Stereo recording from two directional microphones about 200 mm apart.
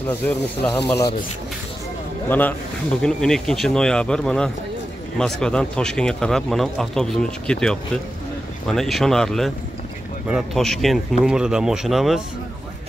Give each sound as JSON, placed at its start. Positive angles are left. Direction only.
{"t": 0.2, "sound": "speech", "side_deg": 10}
{"t": 2.2, "sound": "speech", "side_deg": 10}